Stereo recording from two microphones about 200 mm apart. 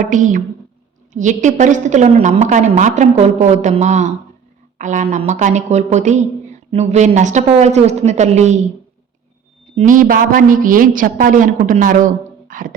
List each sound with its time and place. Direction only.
0.1 s speech: 40° right (ahead or behind)
9.7 s speech: 40° right (ahead or behind)